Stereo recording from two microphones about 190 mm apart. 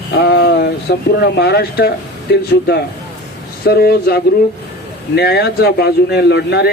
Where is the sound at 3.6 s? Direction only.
55° left (ahead or behind).